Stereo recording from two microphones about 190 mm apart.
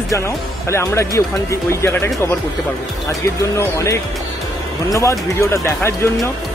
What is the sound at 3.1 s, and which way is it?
Speech, 15° left (ahead or behind).